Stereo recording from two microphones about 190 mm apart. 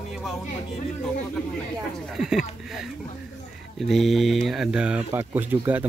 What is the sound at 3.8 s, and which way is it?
Speech, centre (ahead or behind).